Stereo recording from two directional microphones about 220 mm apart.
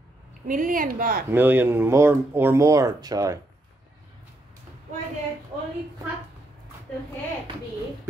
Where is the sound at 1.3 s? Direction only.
10° right (ahead or behind).